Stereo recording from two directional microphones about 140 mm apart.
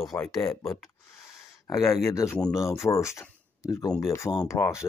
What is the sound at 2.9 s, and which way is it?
Speech, 20° left (ahead or behind).